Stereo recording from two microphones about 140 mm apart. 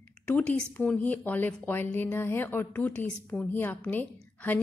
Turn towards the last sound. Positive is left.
turn(degrees=10)  # may be behind; listen again after turning